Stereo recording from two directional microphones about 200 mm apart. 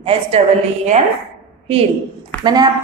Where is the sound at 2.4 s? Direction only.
20° right (ahead or behind).